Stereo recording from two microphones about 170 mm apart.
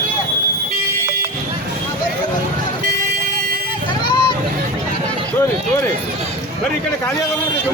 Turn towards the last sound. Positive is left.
turn(degrees=15)  # may be behind; listen again after turning